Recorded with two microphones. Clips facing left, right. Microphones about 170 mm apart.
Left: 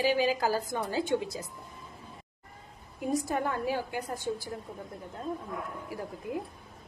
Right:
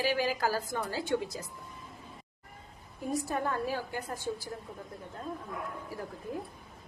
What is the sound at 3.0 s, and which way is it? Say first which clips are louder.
A woman's voice: left 3 dB; 15° left (ahead or behind).